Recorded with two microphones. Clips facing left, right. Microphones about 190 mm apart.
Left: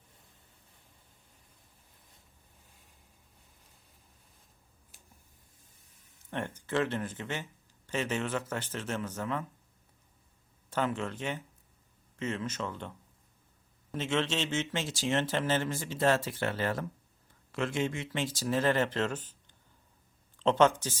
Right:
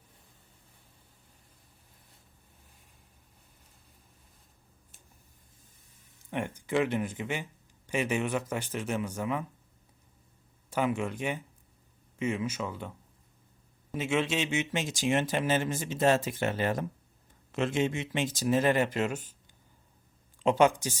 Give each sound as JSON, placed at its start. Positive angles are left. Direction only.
{"t": 6.3, "sound": "speech", "side_deg": -10}
{"t": 10.7, "sound": "speech", "side_deg": -10}
{"t": 13.9, "sound": "speech", "side_deg": -10}
{"t": 20.4, "sound": "speech", "side_deg": -10}